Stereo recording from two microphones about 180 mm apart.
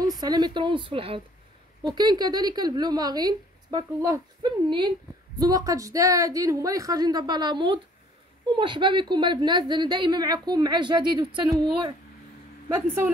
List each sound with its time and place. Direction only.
0.2 s speech: 25° right (ahead or behind)
12.6 s speech: 15° right (ahead or behind)